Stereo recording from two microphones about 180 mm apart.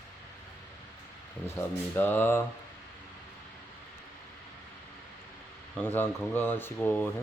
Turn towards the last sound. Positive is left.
turn(degrees=10)  # may be behind; listen again after turning